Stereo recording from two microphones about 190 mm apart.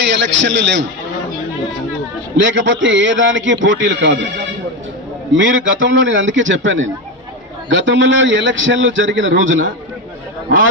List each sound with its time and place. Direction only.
0.0 s speech: 70° right (ahead or behind)
2.4 s a man's voice: 80° right
5.3 s a man's voice: 90° right